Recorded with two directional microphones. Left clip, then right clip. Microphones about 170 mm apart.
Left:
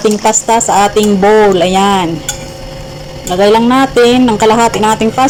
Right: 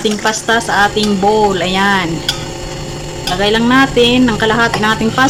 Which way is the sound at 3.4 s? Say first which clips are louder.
Left 4 dB; 15° left (ahead or behind).